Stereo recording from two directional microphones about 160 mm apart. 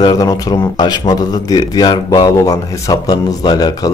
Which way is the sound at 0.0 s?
20° left (ahead or behind).